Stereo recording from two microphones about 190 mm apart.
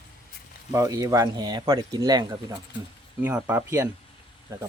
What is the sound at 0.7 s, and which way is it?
Speech, 20° right (ahead or behind).